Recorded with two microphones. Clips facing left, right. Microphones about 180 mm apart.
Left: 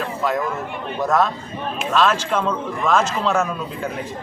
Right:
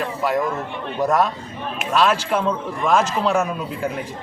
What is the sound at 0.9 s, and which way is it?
A man's voice, 10° right (ahead or behind).